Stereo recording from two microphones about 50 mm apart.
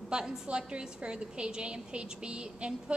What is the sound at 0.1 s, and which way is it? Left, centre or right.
A woman's voice, centre.